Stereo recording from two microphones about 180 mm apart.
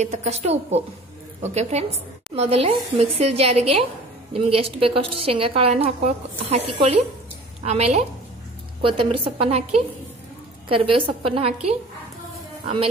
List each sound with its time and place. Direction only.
0.0 s a woman's voice: 40° right (ahead or behind)